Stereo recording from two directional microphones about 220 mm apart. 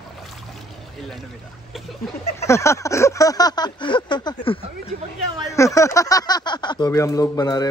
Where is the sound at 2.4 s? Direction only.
15° left (ahead or behind).